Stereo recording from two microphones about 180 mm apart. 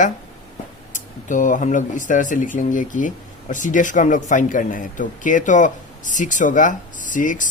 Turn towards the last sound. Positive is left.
turn(degrees=45)  # may be behind; listen again after turning